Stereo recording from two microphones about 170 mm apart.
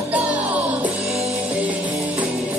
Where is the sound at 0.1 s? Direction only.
10° right (ahead or behind).